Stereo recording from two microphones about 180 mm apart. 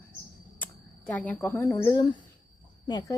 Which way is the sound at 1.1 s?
10° left (ahead or behind).